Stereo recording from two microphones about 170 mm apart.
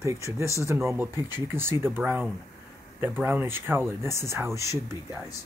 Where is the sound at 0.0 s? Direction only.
15° right (ahead or behind).